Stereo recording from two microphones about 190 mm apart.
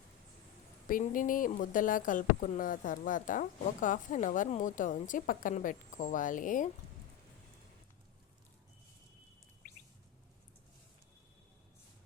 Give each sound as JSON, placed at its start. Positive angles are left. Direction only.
{"t": 0.9, "sound": "speech", "side_deg": 45}